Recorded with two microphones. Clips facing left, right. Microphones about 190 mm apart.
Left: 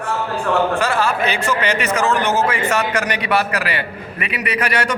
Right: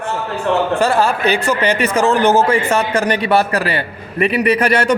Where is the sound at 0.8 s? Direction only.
35° right (ahead or behind).